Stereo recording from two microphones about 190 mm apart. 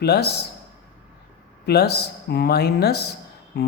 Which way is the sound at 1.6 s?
55° left (ahead or behind).